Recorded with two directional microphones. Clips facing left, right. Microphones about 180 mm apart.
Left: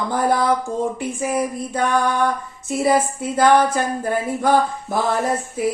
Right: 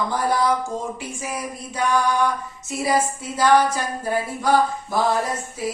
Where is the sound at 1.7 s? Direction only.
55° left (ahead or behind).